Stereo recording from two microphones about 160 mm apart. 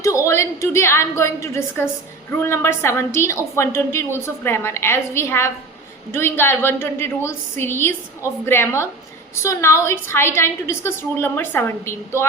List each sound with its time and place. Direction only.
0.0 s a woman's voice: 20° left (ahead or behind)